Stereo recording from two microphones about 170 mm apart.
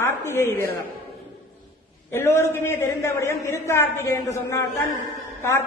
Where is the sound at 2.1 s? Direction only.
15° left (ahead or behind).